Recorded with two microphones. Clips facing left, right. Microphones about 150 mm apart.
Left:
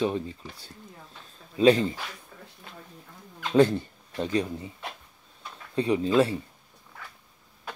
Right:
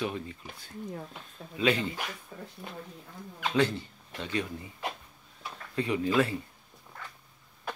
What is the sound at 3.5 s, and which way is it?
Speech, 45° left (ahead or behind).